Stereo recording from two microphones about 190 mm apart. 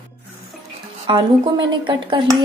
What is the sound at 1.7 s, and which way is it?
Speech, 25° right (ahead or behind).